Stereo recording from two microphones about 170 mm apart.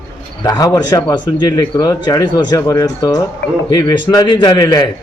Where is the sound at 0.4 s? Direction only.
20° left (ahead or behind).